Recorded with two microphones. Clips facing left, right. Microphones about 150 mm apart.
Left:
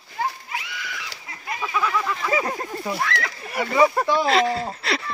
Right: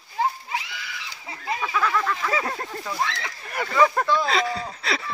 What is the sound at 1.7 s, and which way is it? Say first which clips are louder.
Speech: left 1 dB; 10° left (ahead or behind).